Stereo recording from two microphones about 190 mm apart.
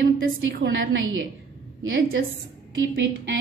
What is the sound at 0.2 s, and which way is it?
A woman's voice, 80° right.